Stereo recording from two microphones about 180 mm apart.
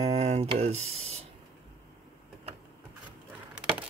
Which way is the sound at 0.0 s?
35° right (ahead or behind).